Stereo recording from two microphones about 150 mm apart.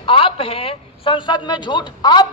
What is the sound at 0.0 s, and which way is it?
A man's voice, 35° left (ahead or behind).